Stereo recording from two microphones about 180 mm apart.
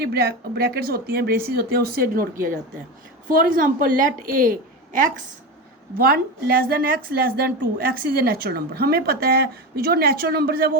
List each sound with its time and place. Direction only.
0.0 s a woman's voice: 60° right (ahead or behind)
3.5 s a woman's voice: 50° right (ahead or behind)